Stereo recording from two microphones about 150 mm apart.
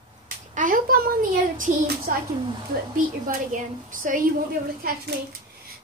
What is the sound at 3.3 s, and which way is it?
A woman's voice, 65° right (ahead or behind).